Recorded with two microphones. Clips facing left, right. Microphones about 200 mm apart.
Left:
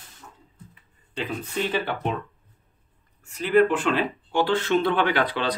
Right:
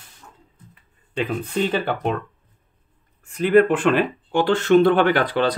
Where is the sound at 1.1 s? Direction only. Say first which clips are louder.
Right 5 dB; 50° right (ahead or behind).